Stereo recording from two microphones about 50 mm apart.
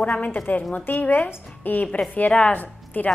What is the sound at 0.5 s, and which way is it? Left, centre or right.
A woman's voice, left.